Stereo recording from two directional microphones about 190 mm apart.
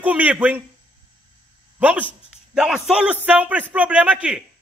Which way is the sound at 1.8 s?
10° right (ahead or behind).